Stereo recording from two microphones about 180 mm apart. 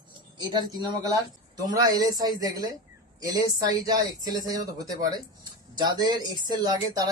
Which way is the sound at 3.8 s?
20° right (ahead or behind).